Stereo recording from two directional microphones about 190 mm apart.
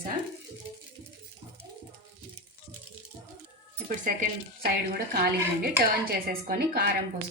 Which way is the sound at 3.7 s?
45° right (ahead or behind).